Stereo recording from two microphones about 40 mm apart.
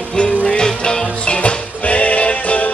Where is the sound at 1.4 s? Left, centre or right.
Left.